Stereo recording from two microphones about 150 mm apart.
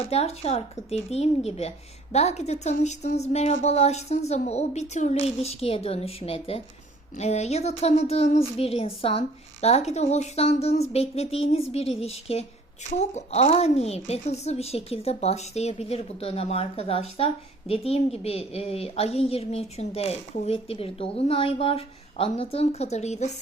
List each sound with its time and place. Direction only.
0.1 s a woman's voice: 45° left (ahead or behind)